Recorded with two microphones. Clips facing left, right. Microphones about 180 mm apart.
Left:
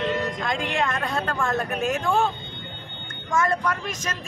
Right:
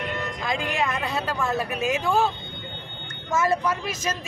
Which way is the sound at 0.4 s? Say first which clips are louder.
Left 1 dB; 5° right (ahead or behind).